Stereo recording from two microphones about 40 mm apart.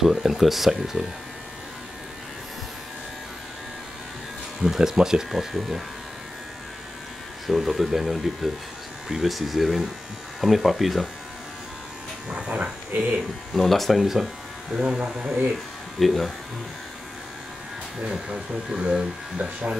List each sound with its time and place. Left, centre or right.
0.0 s speech: centre
4.6 s speech: centre
7.4 s speech: centre
12.3 s electric shaver: right
12.9 s speech: right
13.5 s speech: centre
14.0 s speech: centre
14.7 s speech: right
16.0 s speech: centre
18.1 s speech: centre